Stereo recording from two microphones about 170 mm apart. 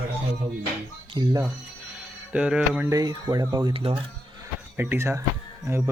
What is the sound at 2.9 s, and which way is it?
Speech, 20° right (ahead or behind).